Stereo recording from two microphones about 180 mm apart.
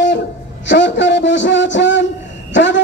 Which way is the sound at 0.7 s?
80° left.